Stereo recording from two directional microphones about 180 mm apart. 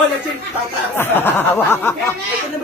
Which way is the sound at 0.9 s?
10° left (ahead or behind).